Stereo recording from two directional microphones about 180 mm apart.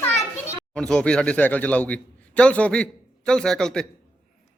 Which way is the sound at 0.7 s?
5° left (ahead or behind).